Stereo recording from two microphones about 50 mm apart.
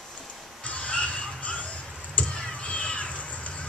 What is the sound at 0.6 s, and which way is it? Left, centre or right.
Fowl, left.